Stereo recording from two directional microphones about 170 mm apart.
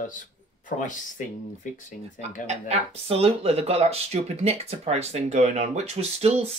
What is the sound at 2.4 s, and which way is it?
Speech, 40° right (ahead or behind).